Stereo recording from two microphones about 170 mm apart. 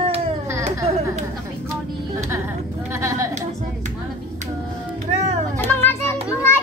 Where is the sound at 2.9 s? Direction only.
15° right (ahead or behind).